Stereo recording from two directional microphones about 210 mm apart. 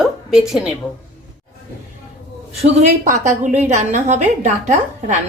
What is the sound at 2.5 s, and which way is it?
Speech, 30° right (ahead or behind).